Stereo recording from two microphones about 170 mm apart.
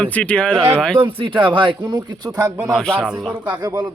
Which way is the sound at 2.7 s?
5° left (ahead or behind).